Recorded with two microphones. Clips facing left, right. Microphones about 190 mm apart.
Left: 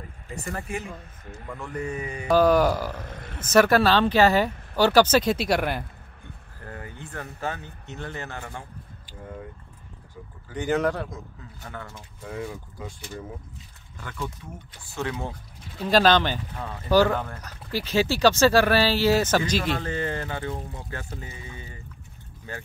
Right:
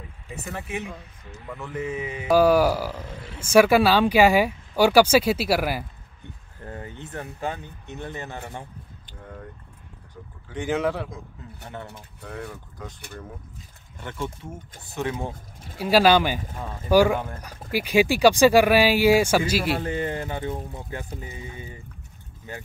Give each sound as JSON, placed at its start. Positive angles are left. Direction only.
{"t": 0.3, "sound": "a man's voice", "side_deg": 0}
{"t": 6.6, "sound": "a sound", "side_deg": -25}
{"t": 7.1, "sound": "speech", "side_deg": -20}
{"t": 9.2, "sound": "a man's voice", "side_deg": 5}
{"t": 10.5, "sound": "a man's voice", "side_deg": 0}
{"t": 12.4, "sound": "speech", "side_deg": 10}
{"t": 13.9, "sound": "speech", "side_deg": -25}